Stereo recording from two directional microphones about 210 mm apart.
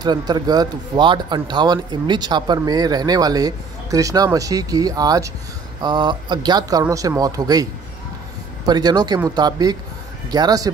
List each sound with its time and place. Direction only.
0.0 s speech: 20° right (ahead or behind)
8.6 s speech: 20° right (ahead or behind)